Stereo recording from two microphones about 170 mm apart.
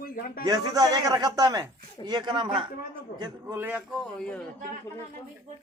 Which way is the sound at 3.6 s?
10° right (ahead or behind).